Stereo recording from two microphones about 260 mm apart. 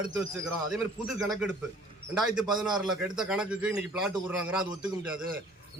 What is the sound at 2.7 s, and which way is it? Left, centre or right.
A man's voice, centre.